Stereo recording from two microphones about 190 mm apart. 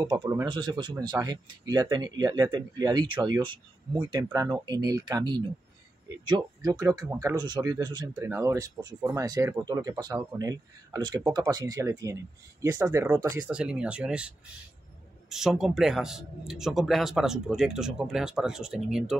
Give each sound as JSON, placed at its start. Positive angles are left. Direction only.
{"t": 0.1, "sound": "speech", "side_deg": -20}
{"t": 13.5, "sound": "a man's voice", "side_deg": -5}